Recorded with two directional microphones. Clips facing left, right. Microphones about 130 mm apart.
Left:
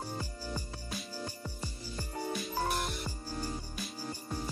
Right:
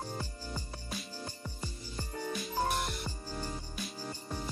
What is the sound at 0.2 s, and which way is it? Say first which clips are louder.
Music: left 2 dB; 10° left (ahead or behind).